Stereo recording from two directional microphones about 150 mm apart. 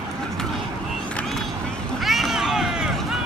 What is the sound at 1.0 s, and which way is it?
Vehicle, 5° left (ahead or behind).